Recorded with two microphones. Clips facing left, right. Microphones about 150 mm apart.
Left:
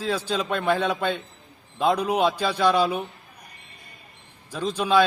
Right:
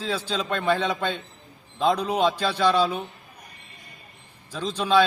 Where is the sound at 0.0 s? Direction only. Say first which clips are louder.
Left 2 dB; 10° left (ahead or behind).